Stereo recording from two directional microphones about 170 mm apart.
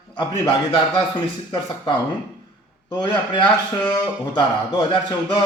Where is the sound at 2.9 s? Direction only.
25° left (ahead or behind).